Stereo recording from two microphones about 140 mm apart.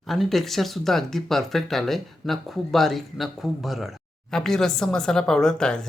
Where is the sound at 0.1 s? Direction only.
Centre (ahead or behind).